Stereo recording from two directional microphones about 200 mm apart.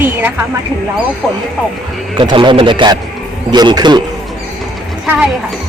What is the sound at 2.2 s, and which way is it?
A man's voice, 25° right (ahead or behind).